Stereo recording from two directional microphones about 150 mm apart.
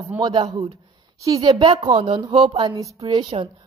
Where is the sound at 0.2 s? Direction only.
30° right (ahead or behind).